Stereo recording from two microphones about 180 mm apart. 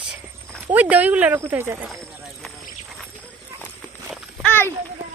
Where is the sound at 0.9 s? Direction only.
10° right (ahead or behind).